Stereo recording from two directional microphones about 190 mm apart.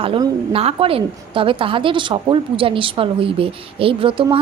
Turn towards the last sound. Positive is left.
turn(degrees=-25)  # may be behind; listen again after turning